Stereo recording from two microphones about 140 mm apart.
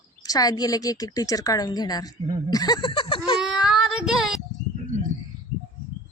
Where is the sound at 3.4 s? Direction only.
5° right (ahead or behind).